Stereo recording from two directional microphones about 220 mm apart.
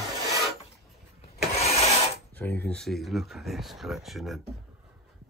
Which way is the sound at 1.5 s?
30° left (ahead or behind).